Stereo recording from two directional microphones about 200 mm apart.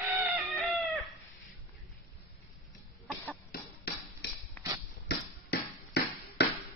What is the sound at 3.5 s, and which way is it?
Hammer, 50° left (ahead or behind).